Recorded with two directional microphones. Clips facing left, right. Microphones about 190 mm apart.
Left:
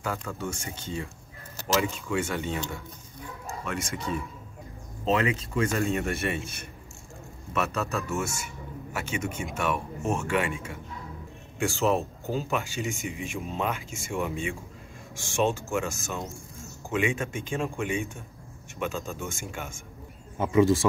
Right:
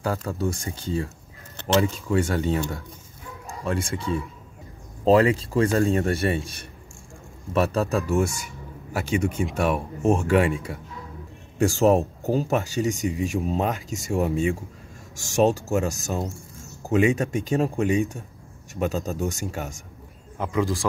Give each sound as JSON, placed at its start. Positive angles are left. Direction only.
{"t": 0.0, "sound": "speech", "side_deg": -35}
{"t": 3.6, "sound": "speech", "side_deg": -30}
{"t": 20.3, "sound": "speech", "side_deg": 0}